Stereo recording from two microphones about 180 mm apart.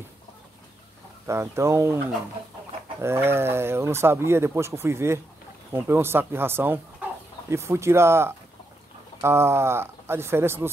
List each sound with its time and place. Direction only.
1.2 s speech: 15° right (ahead or behind)
3.0 s speech: 15° right (ahead or behind)